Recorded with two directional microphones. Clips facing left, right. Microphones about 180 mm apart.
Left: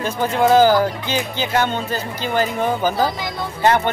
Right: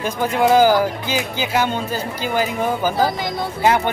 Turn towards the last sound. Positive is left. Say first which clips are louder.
# even
turn(degrees=-10)  # may be behind; listen again after turning